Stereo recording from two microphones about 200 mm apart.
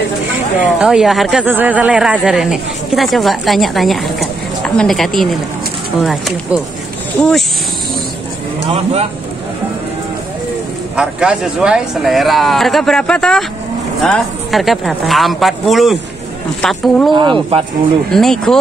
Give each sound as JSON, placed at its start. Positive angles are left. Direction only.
{"t": 0.7, "sound": "speech", "side_deg": 0}
{"t": 8.6, "sound": "speech", "side_deg": -30}
{"t": 11.0, "sound": "speech", "side_deg": -5}
{"t": 17.1, "sound": "speech", "side_deg": -25}
{"t": 18.1, "sound": "speech", "side_deg": 0}